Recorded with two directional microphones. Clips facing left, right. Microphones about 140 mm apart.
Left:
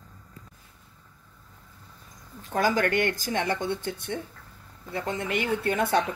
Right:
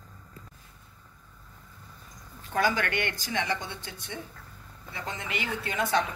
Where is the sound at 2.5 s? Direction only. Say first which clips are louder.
Left 3 dB; 40° left (ahead or behind).